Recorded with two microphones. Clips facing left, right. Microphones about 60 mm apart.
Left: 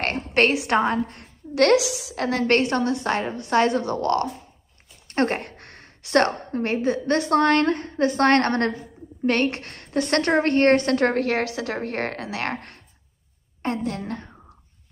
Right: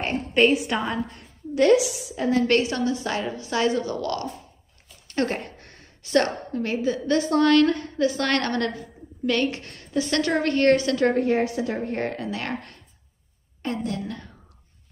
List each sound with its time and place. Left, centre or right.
0.3 s a woman's voice: left
0.7 s a woman's voice: left
2.4 s a woman's voice: left
10.3 s a woman's voice: left
11.1 s a woman's voice: left